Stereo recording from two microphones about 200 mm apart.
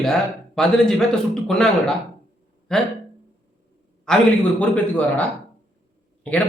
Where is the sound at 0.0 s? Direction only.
Centre (ahead or behind).